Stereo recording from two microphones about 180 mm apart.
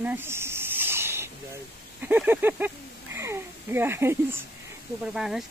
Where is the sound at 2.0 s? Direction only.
10° right (ahead or behind).